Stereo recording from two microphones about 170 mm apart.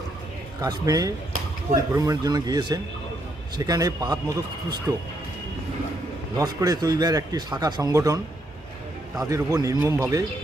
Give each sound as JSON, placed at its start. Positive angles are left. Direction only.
{"t": 0.6, "sound": "a man's voice", "side_deg": -20}
{"t": 6.3, "sound": "a man's voice", "side_deg": -20}